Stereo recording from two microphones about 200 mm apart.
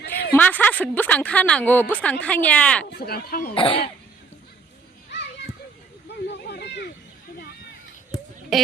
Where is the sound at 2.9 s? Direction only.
50° left (ahead or behind).